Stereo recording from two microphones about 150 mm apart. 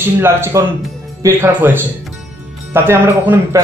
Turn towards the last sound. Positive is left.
turn(degrees=-15)  # may be behind; listen again after turning